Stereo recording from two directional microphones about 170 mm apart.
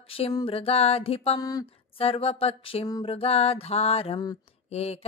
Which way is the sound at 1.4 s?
20° left (ahead or behind).